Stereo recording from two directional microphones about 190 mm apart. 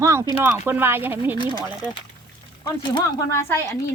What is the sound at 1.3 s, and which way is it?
Speech, 25° left (ahead or behind).